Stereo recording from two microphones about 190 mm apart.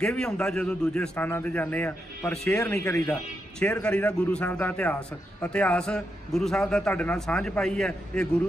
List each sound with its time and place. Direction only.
0.0 s a man's voice: 5° left (ahead or behind)